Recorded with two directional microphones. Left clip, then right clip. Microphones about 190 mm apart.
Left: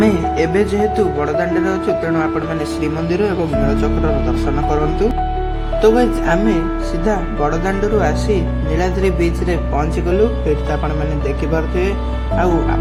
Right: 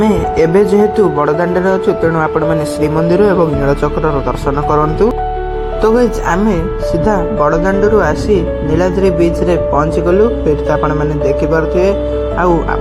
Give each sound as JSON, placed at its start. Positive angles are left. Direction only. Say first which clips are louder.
{"t": 0.3, "sound": "speech", "louder": "right 6 dB", "side_deg": -15}
{"t": 5.8, "sound": "speech", "louder": "right 2 dB", "side_deg": -20}
{"t": 7.4, "sound": "speech", "louder": "right 6 dB", "side_deg": -10}
{"t": 8.8, "sound": "speech", "louder": "right 5 dB", "side_deg": -10}